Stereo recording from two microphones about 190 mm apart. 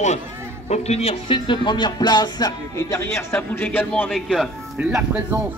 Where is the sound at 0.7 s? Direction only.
35° left (ahead or behind); by 4.9 s centre (ahead or behind).